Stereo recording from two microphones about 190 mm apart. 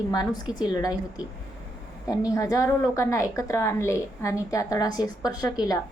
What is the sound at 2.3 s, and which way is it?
A woman's voice, 15° left (ahead or behind).